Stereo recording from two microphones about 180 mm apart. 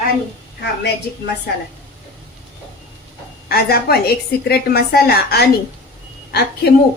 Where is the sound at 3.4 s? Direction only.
60° left (ahead or behind).